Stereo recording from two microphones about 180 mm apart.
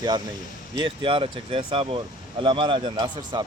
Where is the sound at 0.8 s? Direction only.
30° right (ahead or behind).